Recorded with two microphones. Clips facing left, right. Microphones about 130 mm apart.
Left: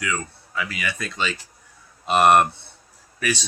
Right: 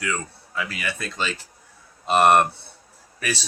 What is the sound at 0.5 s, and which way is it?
Speech, 35° right (ahead or behind).